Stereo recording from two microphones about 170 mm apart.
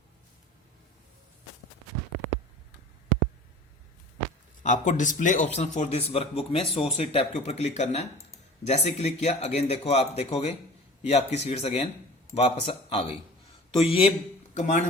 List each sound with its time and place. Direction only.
4.6 s speech: 50° left (ahead or behind); by 14.1 s 35° left (ahead or behind)
14.5 s speech: 45° left (ahead or behind)